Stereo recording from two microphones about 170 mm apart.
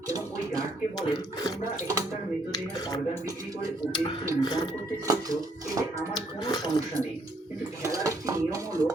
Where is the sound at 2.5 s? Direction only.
25° left (ahead or behind).